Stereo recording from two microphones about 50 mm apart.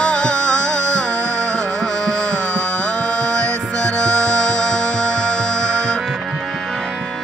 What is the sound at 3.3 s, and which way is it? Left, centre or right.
Music, centre.